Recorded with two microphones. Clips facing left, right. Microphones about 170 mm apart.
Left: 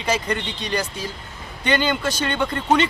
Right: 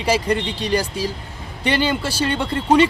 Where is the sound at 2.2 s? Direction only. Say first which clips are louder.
Right 2 dB; 30° right (ahead or behind).